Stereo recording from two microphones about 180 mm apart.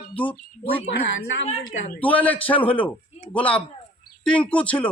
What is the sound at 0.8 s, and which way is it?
Speech, 90° left.